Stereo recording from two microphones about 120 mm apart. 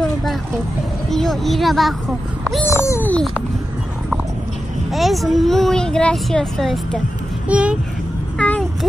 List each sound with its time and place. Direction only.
1.1 s speech: centre (ahead or behind)
2.6 s babbling: 25° left (ahead or behind)
4.9 s speech: centre (ahead or behind)
7.4 s a child's voice: 10° right (ahead or behind)
8.4 s a sound: 10° left (ahead or behind)